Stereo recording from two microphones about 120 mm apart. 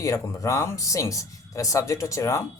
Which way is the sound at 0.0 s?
25° left (ahead or behind).